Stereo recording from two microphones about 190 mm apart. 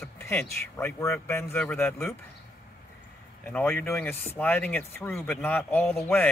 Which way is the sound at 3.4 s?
10° left (ahead or behind).